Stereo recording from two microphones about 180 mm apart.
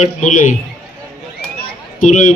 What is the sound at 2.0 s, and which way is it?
Speech, 45° left (ahead or behind).